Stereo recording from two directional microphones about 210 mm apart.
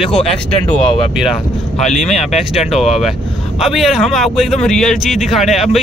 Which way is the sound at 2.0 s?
30° left (ahead or behind).